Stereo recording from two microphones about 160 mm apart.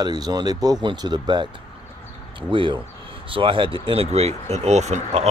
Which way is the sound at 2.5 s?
30° right (ahead or behind).